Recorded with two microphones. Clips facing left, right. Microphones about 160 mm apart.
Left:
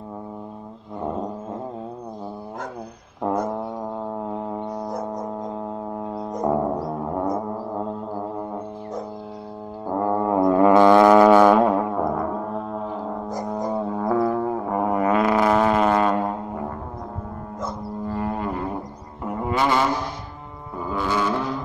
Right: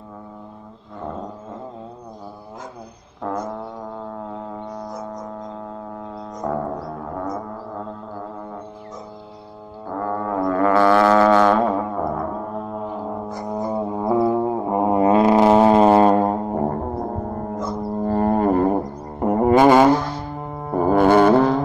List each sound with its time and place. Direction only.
6.4 s music: 20° left (ahead or behind)
9.8 s music: 20° left (ahead or behind); by 21.6 s 60° right (ahead or behind)